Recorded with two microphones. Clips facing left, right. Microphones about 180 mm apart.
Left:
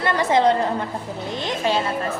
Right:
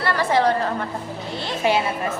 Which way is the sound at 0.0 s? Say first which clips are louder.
Left 1 dB; 20° left (ahead or behind).